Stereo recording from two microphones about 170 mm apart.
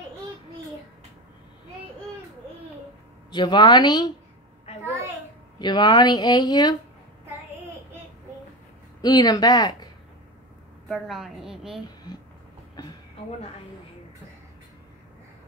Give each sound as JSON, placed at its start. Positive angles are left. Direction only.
{"t": 3.3, "sound": "speech", "side_deg": 25}
{"t": 5.6, "sound": "speech", "side_deg": 25}
{"t": 9.0, "sound": "speech", "side_deg": 25}
{"t": 10.9, "sound": "a woman's voice", "side_deg": 0}
{"t": 12.8, "sound": "a sound", "side_deg": 25}